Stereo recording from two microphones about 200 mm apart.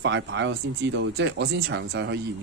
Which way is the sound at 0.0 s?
60° right (ahead or behind).